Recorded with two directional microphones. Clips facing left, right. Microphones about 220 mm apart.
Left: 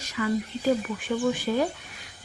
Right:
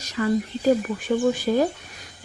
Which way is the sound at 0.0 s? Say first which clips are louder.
Right 4 dB; 40° right (ahead or behind).